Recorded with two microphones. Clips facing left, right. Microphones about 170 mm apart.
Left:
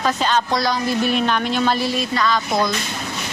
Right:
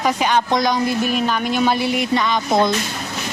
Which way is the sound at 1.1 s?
5° right (ahead or behind).